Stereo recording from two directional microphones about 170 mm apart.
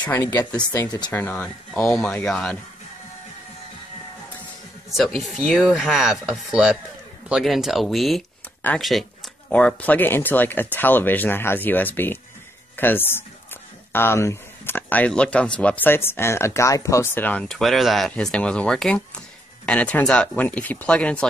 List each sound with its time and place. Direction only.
0.1 s speech: 20° left (ahead or behind)
1.1 s speech: 10° left (ahead or behind)
5.2 s speech: centre (ahead or behind)